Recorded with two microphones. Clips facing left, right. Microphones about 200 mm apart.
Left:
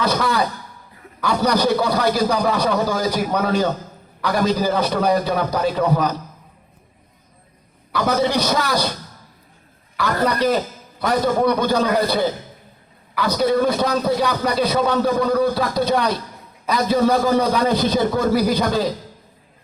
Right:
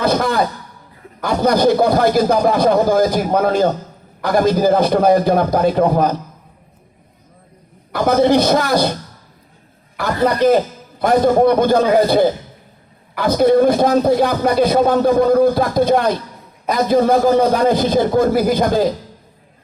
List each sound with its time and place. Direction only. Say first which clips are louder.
0.0 s a sound: right 4 dB; 50° right (ahead or behind)
1.2 s a man's voice: right 4 dB; 50° right (ahead or behind)
7.9 s a man's voice: right 6 dB; 50° right (ahead or behind)
10.0 s a man's voice: right 4 dB; 50° right (ahead or behind)